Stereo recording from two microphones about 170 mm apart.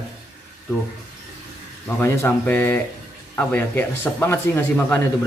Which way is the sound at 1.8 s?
15° left (ahead or behind).